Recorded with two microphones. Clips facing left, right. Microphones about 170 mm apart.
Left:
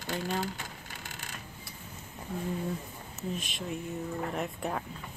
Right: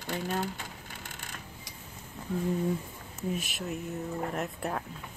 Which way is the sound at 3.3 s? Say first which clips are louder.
Even; 5° right (ahead or behind).